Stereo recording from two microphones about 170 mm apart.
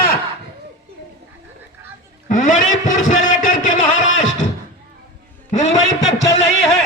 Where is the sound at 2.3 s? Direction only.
50° left (ahead or behind).